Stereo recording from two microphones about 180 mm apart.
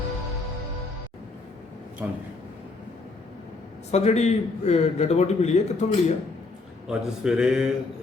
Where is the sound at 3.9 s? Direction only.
35° left (ahead or behind).